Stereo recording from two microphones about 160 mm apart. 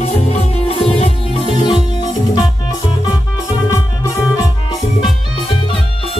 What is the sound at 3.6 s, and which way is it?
Music, 20° left (ahead or behind).